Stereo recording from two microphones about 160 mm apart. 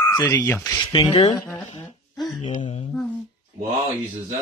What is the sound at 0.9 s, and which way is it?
Speech, 30° left (ahead or behind).